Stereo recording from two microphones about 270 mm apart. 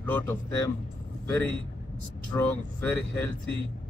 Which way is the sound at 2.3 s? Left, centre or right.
Centre.